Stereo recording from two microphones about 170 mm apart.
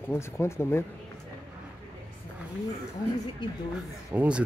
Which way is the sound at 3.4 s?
25° left (ahead or behind).